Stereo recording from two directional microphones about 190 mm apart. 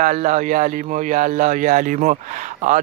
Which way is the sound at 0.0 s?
40° right (ahead or behind).